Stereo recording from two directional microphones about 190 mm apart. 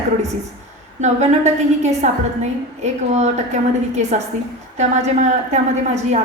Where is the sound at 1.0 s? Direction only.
35° right (ahead or behind).